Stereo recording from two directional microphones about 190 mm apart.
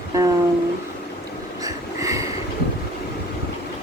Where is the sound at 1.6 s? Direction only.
15° right (ahead or behind).